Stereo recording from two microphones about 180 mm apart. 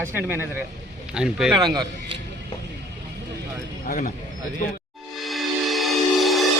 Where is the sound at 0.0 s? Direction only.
10° right (ahead or behind).